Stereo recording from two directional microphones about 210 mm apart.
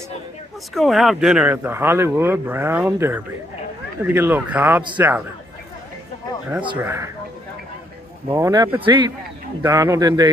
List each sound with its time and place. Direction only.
0.7 s speech: centre (ahead or behind)
6.8 s speech: 10° right (ahead or behind)
8.3 s speech: 15° right (ahead or behind)